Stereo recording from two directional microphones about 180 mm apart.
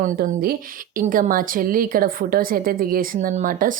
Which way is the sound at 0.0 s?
50° right (ahead or behind).